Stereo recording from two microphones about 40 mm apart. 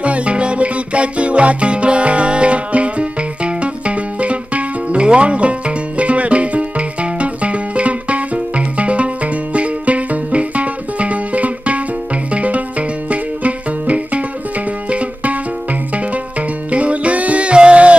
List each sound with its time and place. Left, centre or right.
0.0 s music: right